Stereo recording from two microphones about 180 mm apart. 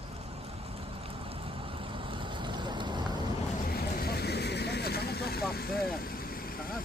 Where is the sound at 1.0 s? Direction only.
30° right (ahead or behind).